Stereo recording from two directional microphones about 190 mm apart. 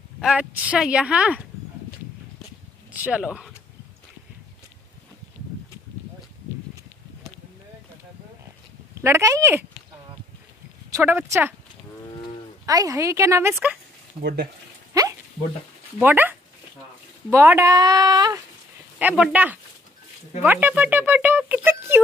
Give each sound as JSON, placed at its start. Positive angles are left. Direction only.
{"t": 0.2, "sound": "a woman's voice", "side_deg": -5}
{"t": 2.9, "sound": "speech", "side_deg": -5}
{"t": 9.0, "sound": "speech", "side_deg": -15}
{"t": 10.9, "sound": "speech", "side_deg": -10}
{"t": 12.6, "sound": "speech", "side_deg": -20}
{"t": 14.2, "sound": "speech", "side_deg": -55}
{"t": 16.0, "sound": "speech", "side_deg": -10}
{"t": 18.9, "sound": "speech", "side_deg": -5}